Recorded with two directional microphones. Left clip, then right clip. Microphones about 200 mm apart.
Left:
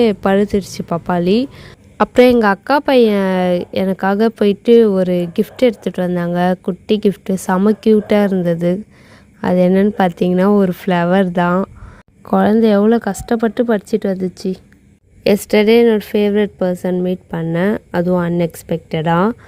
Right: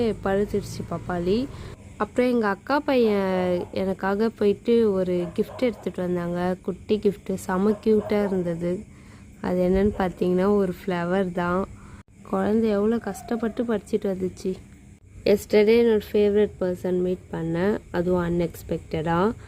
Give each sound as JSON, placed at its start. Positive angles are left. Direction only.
{"t": 0.0, "sound": "a woman's voice", "side_deg": 40}